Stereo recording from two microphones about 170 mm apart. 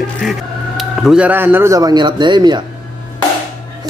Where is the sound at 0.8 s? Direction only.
Centre (ahead or behind); by 2.6 s 25° right (ahead or behind).